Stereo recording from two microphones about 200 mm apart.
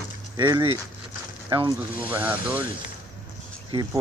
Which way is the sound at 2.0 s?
10° right (ahead or behind).